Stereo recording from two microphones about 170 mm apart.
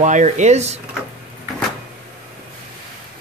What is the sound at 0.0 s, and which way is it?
Speech, 45° right (ahead or behind).